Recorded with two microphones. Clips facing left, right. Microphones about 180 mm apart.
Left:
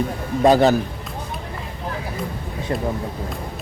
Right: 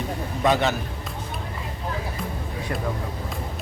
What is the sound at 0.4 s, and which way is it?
Speech, 35° left (ahead or behind).